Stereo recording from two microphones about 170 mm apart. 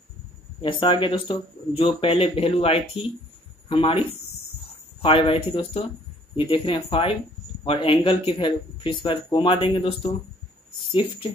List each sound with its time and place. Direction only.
0.6 s speech: 30° left (ahead or behind)
5.0 s speech: 30° left (ahead or behind)